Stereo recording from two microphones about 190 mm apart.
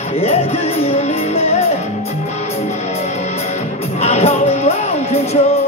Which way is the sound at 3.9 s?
35° left (ahead or behind).